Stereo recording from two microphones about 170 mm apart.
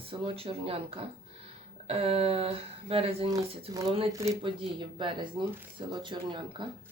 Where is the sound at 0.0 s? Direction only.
30° right (ahead or behind).